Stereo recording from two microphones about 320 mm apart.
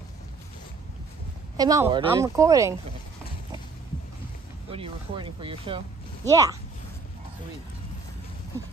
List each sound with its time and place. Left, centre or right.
1.6 s speech: centre
4.6 s speech: centre